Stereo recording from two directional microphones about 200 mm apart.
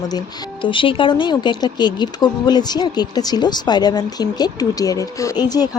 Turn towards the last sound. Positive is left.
turn(degrees=20)  # may be behind; listen again after turning